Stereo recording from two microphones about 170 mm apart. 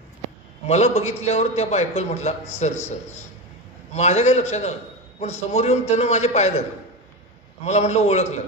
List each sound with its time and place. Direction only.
0.7 s a man's voice: 40° left (ahead or behind)
3.9 s a man's voice: 40° left (ahead or behind)
7.6 s a man's voice: 40° left (ahead or behind)